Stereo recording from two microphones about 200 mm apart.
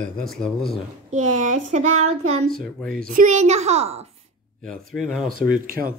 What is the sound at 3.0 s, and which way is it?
A woman's voice, 40° right (ahead or behind).